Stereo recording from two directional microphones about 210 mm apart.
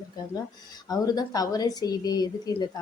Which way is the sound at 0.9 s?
20° left (ahead or behind).